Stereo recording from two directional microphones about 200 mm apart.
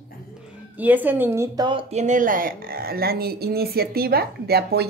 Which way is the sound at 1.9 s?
40° right (ahead or behind).